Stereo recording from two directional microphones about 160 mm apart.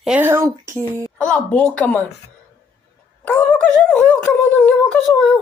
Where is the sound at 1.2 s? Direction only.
5° left (ahead or behind).